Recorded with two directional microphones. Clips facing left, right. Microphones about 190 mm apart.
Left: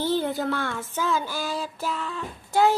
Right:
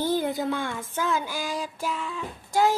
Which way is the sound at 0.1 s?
15° right (ahead or behind).